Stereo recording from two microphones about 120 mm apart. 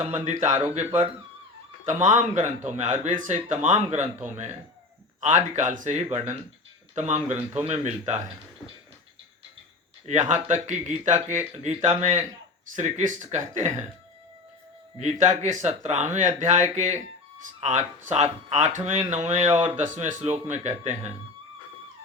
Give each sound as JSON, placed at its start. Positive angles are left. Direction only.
{"t": 0.1, "sound": "speech", "side_deg": -85}
{"t": 0.7, "sound": "speech", "side_deg": -70}
{"t": 1.8, "sound": "speech", "side_deg": -90}
{"t": 5.2, "sound": "speech", "side_deg": -90}
{"t": 6.9, "sound": "speech", "side_deg": -70}
{"t": 10.1, "sound": "speech", "side_deg": -80}
{"t": 12.7, "sound": "speech", "side_deg": -90}
{"t": 14.9, "sound": "speech", "side_deg": -75}
{"t": 19.5, "sound": "speech", "side_deg": -40}
{"t": 19.7, "sound": "speech", "side_deg": -90}
{"t": 20.3, "sound": "speech", "side_deg": -75}